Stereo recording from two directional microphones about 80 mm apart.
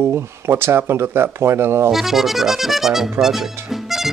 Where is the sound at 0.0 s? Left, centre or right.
Right.